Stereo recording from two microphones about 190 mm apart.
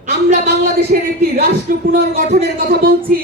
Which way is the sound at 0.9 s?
55° right (ahead or behind).